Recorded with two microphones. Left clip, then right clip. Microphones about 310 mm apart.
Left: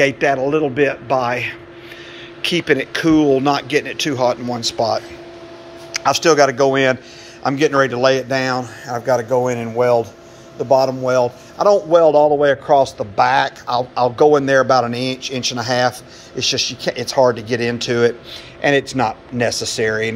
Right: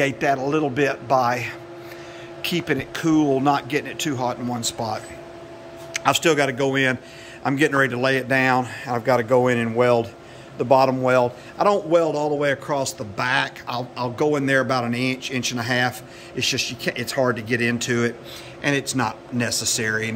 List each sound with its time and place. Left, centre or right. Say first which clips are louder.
0.0 s speech: left 6 dB; centre
8.5 s speech: even; centre
9.0 s a man's voice: left 2 dB; centre